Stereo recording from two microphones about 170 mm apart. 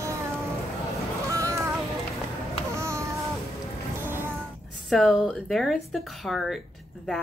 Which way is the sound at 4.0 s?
15° right (ahead or behind).